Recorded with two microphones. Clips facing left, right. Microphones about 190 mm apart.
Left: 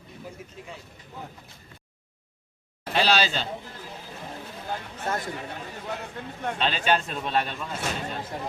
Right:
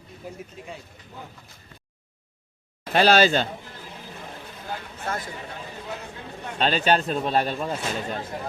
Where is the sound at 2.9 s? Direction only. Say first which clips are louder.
Right 6 dB; 50° right (ahead or behind).